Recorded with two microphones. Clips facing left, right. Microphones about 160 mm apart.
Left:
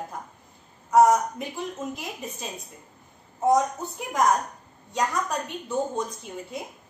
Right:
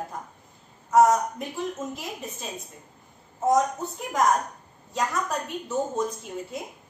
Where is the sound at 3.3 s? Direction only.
Centre (ahead or behind).